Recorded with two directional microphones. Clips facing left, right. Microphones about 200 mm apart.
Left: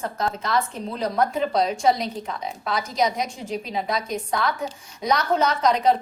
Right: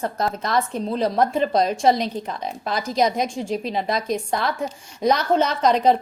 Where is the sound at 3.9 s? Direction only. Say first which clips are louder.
Right 2 dB; 30° right (ahead or behind).